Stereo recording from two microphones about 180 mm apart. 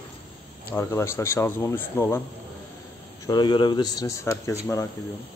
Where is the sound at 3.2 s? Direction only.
25° left (ahead or behind).